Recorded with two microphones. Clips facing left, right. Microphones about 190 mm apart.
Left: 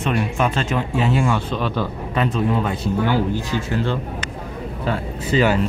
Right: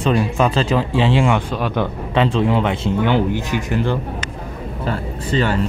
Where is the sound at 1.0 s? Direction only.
90° right.